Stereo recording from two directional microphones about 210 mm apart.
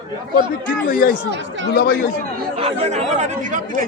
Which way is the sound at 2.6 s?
35° right (ahead or behind).